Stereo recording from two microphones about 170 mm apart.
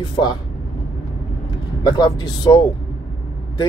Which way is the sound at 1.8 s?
25° left (ahead or behind).